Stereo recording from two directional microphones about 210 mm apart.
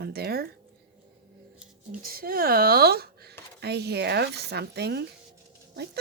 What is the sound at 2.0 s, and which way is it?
Speech, 45° right (ahead or behind).